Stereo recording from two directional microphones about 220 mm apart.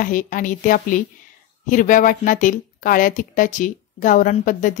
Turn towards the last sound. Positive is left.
turn(degrees=35)  # may be behind; listen again after turning